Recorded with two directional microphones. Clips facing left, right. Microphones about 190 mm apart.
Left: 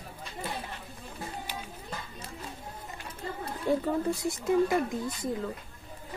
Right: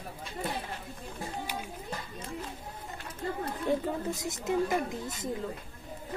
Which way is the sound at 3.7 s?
20° right (ahead or behind).